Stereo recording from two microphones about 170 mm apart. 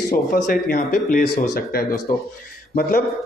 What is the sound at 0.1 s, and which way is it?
Speech, 55° left (ahead or behind).